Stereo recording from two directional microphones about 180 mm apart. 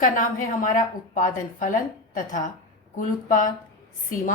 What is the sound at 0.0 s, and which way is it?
A woman's voice, 45° left (ahead or behind).